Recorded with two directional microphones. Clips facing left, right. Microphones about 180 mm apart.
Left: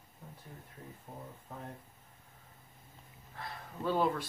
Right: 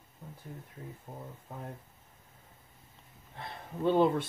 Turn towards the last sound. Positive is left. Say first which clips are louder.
# right 6 dB
turn(degrees=-25)  # may be behind; listen again after turning